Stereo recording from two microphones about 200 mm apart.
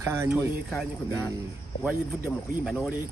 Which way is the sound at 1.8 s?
5° right (ahead or behind).